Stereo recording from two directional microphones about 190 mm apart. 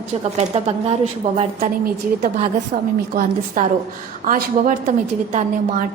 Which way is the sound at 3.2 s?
45° right (ahead or behind).